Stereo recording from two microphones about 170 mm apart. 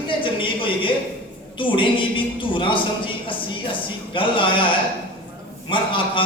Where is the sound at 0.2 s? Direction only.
30° left (ahead or behind).